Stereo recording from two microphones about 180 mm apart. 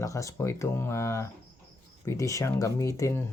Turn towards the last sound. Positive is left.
turn(degrees=15)  # may be behind; listen again after turning